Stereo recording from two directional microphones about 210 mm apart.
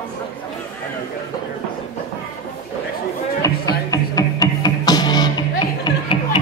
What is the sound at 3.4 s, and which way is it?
Music, 15° left (ahead or behind).